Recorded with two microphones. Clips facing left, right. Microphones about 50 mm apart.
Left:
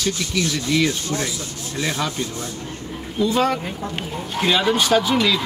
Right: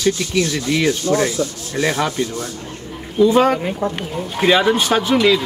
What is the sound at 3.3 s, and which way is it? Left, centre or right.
Speech, right.